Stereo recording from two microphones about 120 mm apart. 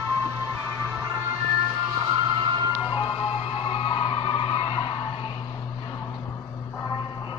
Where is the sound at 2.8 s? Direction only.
50° left (ahead or behind).